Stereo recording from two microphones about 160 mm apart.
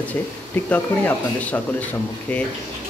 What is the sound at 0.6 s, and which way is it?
Speech, 10° left (ahead or behind).